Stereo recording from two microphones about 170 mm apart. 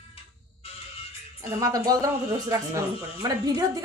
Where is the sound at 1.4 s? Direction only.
20° right (ahead or behind).